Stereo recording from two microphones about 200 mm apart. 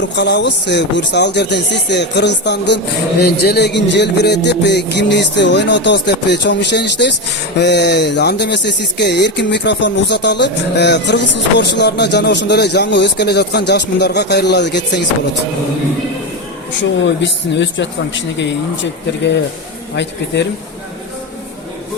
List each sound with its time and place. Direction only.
0.0 s speech: 60° left (ahead or behind)
16.8 s speech: 65° left (ahead or behind)
20.0 s speech: 60° left (ahead or behind)